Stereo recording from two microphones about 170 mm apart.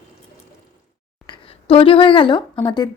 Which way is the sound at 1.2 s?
30° left (ahead or behind).